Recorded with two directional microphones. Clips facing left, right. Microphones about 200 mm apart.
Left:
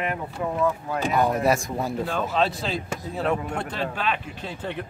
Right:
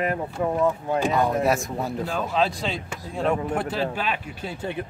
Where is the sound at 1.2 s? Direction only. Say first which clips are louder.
Even; centre (ahead or behind).